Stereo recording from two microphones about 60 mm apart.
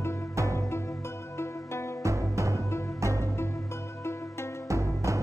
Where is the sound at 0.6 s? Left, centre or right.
Left.